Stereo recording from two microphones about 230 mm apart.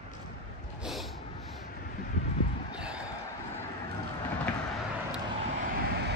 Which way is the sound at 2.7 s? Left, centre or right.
Centre.